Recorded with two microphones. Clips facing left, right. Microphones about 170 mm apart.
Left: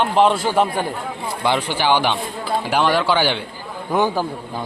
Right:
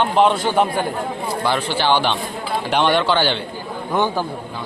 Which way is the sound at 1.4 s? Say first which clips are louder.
Left 1 dB; 15° left (ahead or behind).